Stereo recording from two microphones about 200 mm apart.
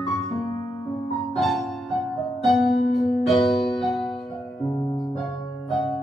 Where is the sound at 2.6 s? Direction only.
35° left (ahead or behind).